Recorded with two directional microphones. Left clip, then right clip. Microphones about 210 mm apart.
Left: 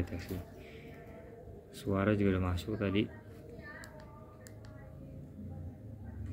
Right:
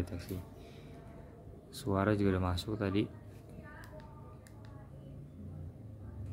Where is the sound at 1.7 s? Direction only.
20° right (ahead or behind).